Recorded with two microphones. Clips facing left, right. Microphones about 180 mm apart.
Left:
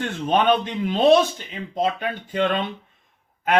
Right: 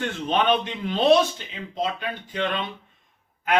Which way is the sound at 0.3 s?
50° left (ahead or behind).